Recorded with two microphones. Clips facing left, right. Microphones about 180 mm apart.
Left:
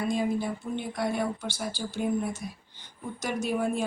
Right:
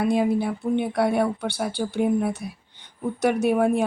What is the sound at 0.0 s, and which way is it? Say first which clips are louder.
Speech: right 6 dB; 65° right (ahead or behind).